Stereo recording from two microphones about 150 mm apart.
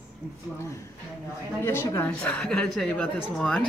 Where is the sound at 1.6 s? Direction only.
15° left (ahead or behind).